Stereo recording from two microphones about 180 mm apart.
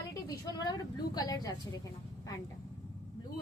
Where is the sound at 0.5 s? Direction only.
20° left (ahead or behind).